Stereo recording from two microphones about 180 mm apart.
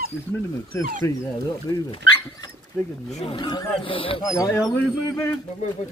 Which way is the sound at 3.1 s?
30° left (ahead or behind).